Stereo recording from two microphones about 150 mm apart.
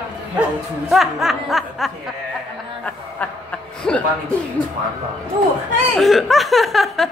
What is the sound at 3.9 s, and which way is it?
Speech, 5° left (ahead or behind).